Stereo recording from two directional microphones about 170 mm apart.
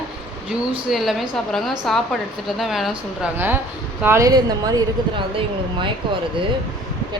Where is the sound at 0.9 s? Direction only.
Centre (ahead or behind); by 5.2 s 25° right (ahead or behind).